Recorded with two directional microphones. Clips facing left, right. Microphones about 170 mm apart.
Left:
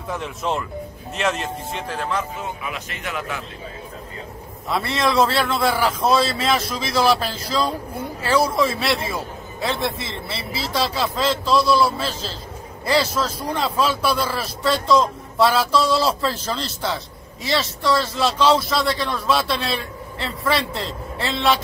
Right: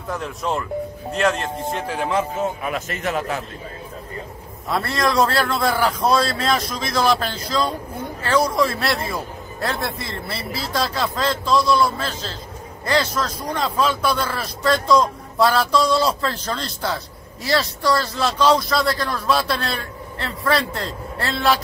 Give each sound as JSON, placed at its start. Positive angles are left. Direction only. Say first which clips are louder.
{"t": 0.1, "sound": "a man's voice", "louder": "even", "side_deg": 0}
{"t": 1.9, "sound": "speech", "louder": "even", "side_deg": -10}
{"t": 2.6, "sound": "speech", "louder": "right 6 dB", "side_deg": -45}
{"t": 4.6, "sound": "a man's voice", "louder": "even", "side_deg": 0}